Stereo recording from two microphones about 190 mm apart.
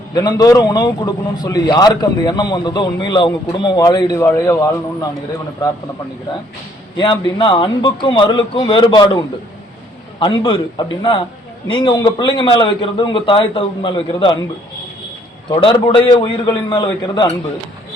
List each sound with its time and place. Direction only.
0.1 s a man's voice: 20° left (ahead or behind)
6.9 s a man's voice: 25° left (ahead or behind)
15.4 s a man's voice: 25° left (ahead or behind)